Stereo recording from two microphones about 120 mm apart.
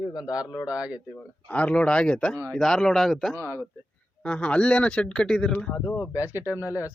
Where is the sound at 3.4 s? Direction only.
15° left (ahead or behind).